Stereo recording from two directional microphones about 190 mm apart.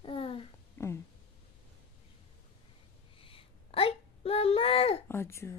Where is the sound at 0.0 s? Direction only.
30° left (ahead or behind).